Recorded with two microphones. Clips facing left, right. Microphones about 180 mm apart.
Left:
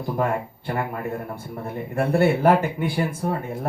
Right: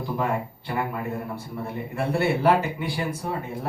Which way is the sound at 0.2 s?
50° left (ahead or behind).